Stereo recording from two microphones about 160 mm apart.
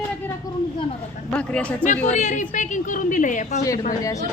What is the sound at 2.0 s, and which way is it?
A woman's voice, 45° left (ahead or behind).